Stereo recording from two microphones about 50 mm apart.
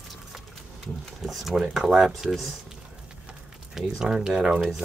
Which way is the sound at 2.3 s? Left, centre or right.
Centre.